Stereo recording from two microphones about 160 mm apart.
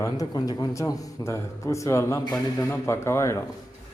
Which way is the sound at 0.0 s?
25° left (ahead or behind).